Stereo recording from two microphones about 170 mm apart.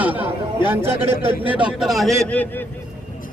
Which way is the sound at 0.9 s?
35° right (ahead or behind).